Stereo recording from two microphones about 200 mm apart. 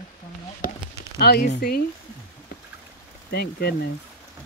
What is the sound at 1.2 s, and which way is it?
Speech, 50° left (ahead or behind).